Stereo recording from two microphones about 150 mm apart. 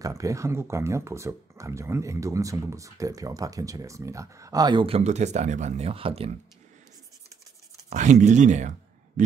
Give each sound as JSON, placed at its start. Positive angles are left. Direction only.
{"t": 0.0, "sound": "speech", "side_deg": -20}
{"t": 7.9, "sound": "speech", "side_deg": -55}